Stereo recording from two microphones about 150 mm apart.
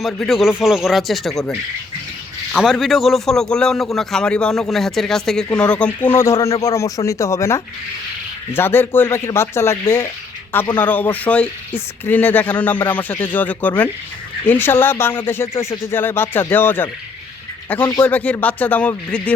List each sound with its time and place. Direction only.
0.0 s a man's voice: centre (ahead or behind)
2.6 s a man's voice: centre (ahead or behind)